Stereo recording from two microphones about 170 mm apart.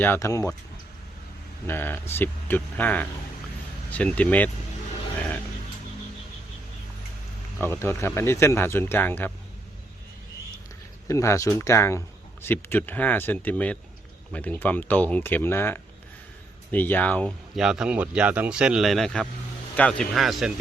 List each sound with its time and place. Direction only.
0.0 s speech: 15° left (ahead or behind)
1.6 s speech: 10° left (ahead or behind)
7.6 s speech: 10° left (ahead or behind)
11.1 s speech: 15° left (ahead or behind); by 20.5 s centre (ahead or behind)